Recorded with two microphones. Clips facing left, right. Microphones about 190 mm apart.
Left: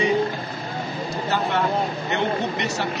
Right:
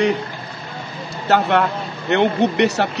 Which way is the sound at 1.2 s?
65° right (ahead or behind).